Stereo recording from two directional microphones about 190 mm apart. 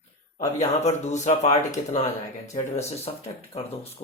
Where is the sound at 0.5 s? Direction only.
35° left (ahead or behind).